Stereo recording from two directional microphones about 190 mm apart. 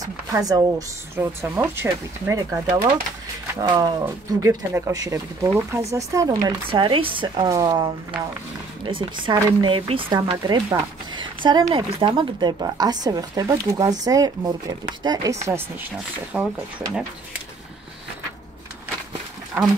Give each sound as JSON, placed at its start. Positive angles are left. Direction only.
{"t": 0.0, "sound": "speech", "side_deg": -20}
{"t": 3.6, "sound": "speech", "side_deg": -20}